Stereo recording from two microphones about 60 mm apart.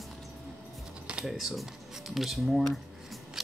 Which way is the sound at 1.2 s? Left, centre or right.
Centre.